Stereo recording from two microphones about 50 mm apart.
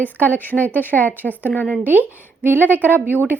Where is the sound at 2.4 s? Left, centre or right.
Right.